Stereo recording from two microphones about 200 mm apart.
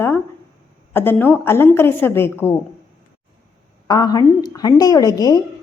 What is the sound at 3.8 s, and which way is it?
A woman's voice, 20° left (ahead or behind).